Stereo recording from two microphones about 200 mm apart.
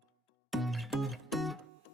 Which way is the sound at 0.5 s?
Centre (ahead or behind).